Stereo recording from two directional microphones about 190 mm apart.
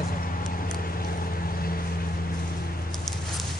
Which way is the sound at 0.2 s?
45° left (ahead or behind).